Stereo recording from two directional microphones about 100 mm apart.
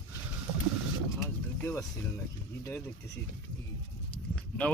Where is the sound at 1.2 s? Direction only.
25° left (ahead or behind).